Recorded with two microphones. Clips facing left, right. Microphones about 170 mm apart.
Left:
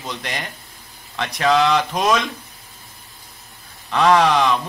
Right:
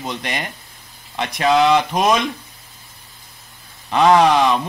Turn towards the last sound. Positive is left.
turn(degrees=-15)  # may be behind; listen again after turning